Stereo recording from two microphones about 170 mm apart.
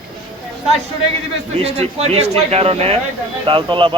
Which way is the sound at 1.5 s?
35° right (ahead or behind).